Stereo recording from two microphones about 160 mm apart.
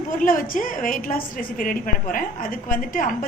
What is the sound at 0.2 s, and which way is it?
A woman's voice, 60° left (ahead or behind).